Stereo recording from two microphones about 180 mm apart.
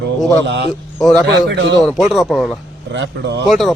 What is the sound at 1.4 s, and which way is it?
Speech, 85° right.